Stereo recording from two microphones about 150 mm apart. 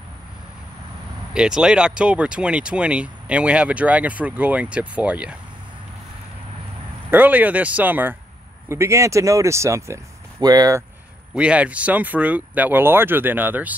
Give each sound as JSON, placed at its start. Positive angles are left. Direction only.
{"t": 1.3, "sound": "speech", "side_deg": -5}
{"t": 7.1, "sound": "speech", "side_deg": -10}
{"t": 11.3, "sound": "speech", "side_deg": -10}